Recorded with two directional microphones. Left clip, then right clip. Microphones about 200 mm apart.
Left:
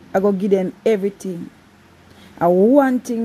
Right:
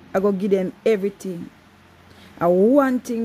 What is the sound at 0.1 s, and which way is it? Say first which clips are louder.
Speech: left 3 dB; 10° right (ahead or behind).